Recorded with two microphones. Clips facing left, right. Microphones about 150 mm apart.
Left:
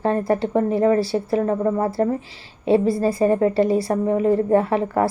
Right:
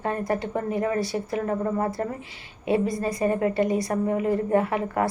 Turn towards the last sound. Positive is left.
turn(degrees=30)  # may be behind; listen again after turning